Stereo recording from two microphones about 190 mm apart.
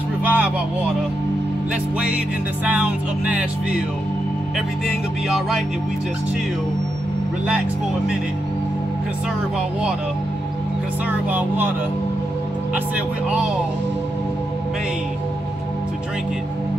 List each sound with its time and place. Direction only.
0.2 s vehicle: 10° right (ahead or behind)
2.6 s music: 5° right (ahead or behind)
4.8 s music: centre (ahead or behind)
11.1 s music: 10° right (ahead or behind)